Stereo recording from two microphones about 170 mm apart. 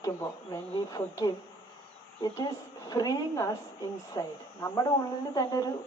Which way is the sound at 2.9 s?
20° left (ahead or behind).